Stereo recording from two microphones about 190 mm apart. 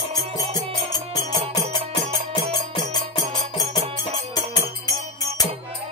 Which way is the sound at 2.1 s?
25° left (ahead or behind).